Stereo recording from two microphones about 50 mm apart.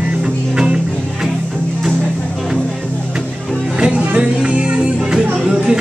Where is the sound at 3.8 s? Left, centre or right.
Right.